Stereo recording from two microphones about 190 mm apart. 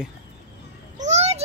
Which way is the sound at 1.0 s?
35° right (ahead or behind).